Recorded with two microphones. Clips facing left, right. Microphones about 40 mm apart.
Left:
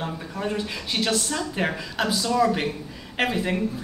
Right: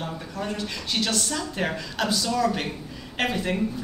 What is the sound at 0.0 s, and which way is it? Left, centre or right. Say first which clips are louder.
A woman's voice: left 2 dB; centre.